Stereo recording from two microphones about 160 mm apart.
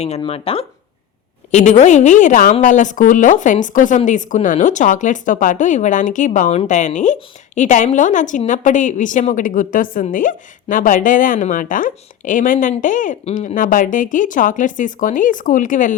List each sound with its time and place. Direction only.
0.2 s a woman's voice: 35° left (ahead or behind); by 16.0 s 55° left (ahead or behind)